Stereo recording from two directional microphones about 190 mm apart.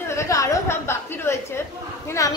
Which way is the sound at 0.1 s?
15° left (ahead or behind).